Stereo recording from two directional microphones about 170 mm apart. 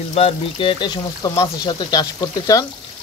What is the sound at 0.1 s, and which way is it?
Speech, 35° left (ahead or behind).